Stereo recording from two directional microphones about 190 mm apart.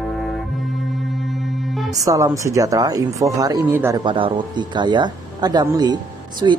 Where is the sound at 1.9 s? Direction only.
20° right (ahead or behind).